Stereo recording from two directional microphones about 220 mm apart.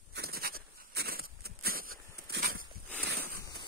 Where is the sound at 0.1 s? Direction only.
45° right (ahead or behind).